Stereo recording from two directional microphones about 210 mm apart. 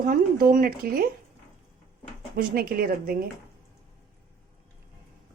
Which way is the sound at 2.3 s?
45° right (ahead or behind).